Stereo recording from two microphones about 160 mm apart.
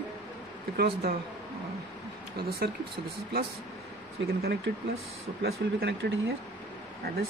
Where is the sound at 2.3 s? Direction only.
70° right (ahead or behind).